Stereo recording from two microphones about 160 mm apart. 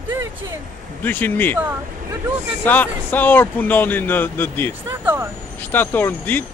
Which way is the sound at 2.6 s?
10° left (ahead or behind).